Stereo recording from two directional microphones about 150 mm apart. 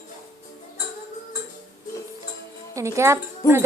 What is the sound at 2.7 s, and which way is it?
Music, 20° right (ahead or behind).